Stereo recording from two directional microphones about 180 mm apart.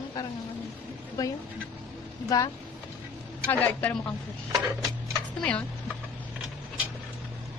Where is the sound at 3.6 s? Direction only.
10° left (ahead or behind).